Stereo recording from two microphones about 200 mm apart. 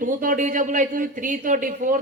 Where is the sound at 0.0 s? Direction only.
40° right (ahead or behind).